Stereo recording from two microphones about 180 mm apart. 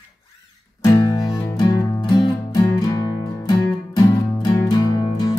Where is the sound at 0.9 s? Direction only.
20° left (ahead or behind).